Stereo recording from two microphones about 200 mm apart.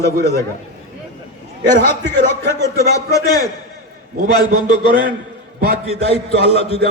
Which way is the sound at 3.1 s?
15° left (ahead or behind).